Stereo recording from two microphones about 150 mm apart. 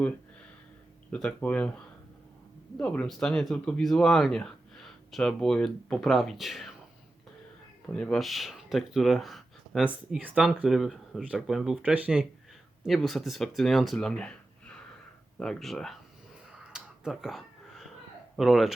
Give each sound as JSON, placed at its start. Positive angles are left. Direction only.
{"t": 1.1, "sound": "speech", "side_deg": 10}
{"t": 7.9, "sound": "speech", "side_deg": 5}
{"t": 16.6, "sound": "finger snapping", "side_deg": -5}
{"t": 18.3, "sound": "speech", "side_deg": 0}